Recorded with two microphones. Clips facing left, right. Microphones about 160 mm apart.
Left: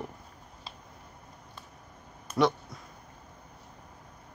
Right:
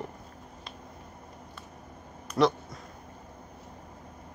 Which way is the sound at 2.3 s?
Centre (ahead or behind).